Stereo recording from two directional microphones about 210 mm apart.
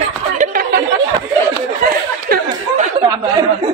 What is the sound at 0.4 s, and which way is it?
Chatter, 40° right (ahead or behind).